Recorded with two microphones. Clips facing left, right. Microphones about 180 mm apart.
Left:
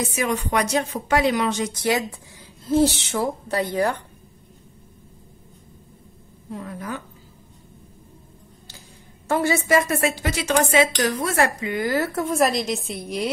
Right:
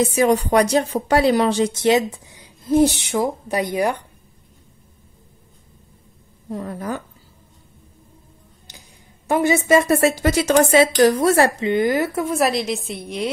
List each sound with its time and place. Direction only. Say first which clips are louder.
0.0 s a woman's voice: right 8 dB; 35° right (ahead or behind); by 4.0 s 15° right (ahead or behind)
6.5 s speech: right 5 dB; 40° right (ahead or behind)
9.3 s a woman's voice: right 4 dB; 20° right (ahead or behind)
9.8 s a woman's voice: right 5 dB; 35° right (ahead or behind); by 12.3 s 15° right (ahead or behind)
12.3 s a woman's voice: right 1 dB; centre (ahead or behind)